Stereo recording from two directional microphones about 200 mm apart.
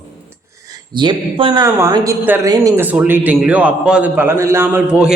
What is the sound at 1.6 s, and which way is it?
Speech, 15° right (ahead or behind).